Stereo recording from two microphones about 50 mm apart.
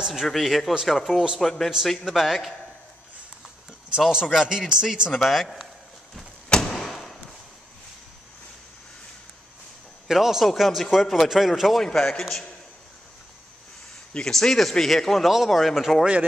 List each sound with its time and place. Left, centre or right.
0.0 s speech: centre
3.9 s speech: centre
5.2 s speech: centre
6.5 s a sound: centre
10.0 s a man's voice: centre
11.8 s a man's voice: centre
14.1 s a man's voice: centre
15.2 s speech: centre